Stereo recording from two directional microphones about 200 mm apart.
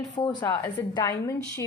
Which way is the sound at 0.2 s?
20° left (ahead or behind).